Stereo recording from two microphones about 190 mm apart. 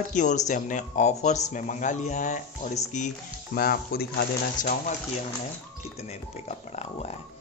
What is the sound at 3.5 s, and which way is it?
Speech, 55° left (ahead or behind).